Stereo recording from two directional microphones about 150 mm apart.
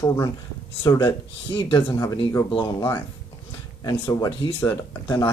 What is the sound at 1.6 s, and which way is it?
Speech, 35° left (ahead or behind).